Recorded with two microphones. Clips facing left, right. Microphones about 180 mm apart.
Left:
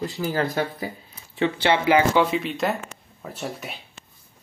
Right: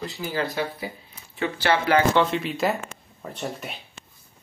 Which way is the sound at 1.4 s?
20° left (ahead or behind).